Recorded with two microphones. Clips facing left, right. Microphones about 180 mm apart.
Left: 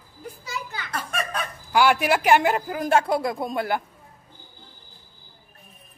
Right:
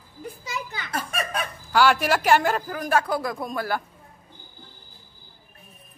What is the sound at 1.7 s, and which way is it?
A man's voice, 15° left (ahead or behind).